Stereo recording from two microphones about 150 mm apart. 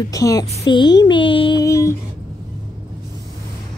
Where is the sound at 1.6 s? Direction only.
20° left (ahead or behind).